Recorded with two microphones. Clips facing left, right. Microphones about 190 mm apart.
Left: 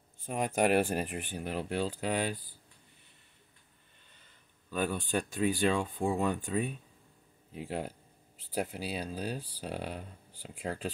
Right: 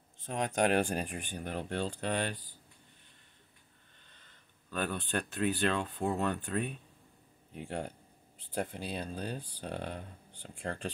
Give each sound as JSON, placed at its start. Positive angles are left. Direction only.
{"t": 0.2, "sound": "speech", "side_deg": 5}
{"t": 4.1, "sound": "speech", "side_deg": 10}